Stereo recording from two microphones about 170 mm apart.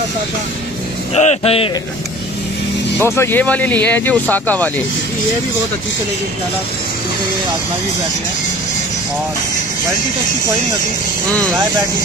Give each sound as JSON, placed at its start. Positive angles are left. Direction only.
{"t": 1.1, "sound": "speech", "side_deg": 40}
{"t": 3.0, "sound": "speech", "side_deg": 15}